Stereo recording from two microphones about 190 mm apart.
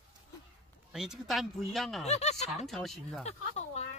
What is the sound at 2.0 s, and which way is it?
Speech, 35° left (ahead or behind).